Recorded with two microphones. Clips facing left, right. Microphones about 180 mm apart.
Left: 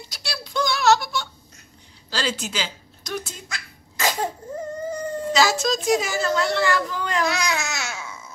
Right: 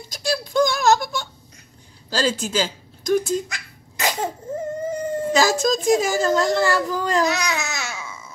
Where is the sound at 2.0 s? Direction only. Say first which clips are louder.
Right 5 dB; 45° right (ahead or behind).